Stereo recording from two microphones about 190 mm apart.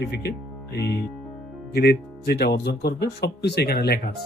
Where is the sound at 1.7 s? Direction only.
55° left (ahead or behind).